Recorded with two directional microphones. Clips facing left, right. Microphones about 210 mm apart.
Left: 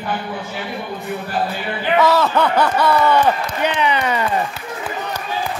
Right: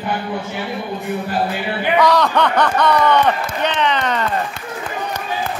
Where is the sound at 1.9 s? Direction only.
5° left (ahead or behind).